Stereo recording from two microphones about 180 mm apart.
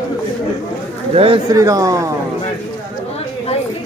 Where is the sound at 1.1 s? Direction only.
30° right (ahead or behind).